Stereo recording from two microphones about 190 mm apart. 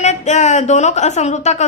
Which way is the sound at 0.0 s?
35° left (ahead or behind).